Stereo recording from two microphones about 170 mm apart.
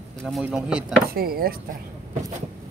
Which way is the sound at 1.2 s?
60° right (ahead or behind).